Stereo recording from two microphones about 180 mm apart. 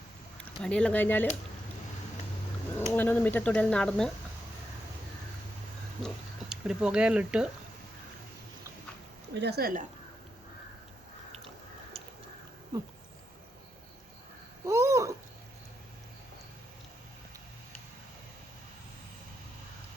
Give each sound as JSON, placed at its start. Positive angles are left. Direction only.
{"t": 0.6, "sound": "speech", "side_deg": 5}
{"t": 2.7, "sound": "speech", "side_deg": 10}
{"t": 6.5, "sound": "speech", "side_deg": -5}
{"t": 9.4, "sound": "a woman's voice", "side_deg": -60}
{"t": 11.9, "sound": "a sound", "side_deg": -35}
{"t": 14.6, "sound": "a sound", "side_deg": -15}